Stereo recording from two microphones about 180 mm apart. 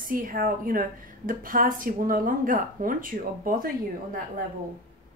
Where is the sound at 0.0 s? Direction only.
50° right (ahead or behind).